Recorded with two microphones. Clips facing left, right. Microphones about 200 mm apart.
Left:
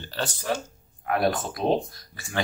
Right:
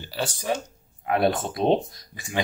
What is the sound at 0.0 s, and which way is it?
Speech, 10° right (ahead or behind).